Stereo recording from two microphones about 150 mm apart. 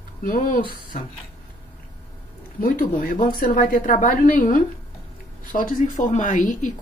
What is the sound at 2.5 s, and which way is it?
Speech, 70° left (ahead or behind).